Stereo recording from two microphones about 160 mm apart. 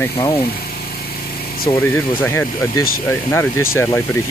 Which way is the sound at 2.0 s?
10° left (ahead or behind).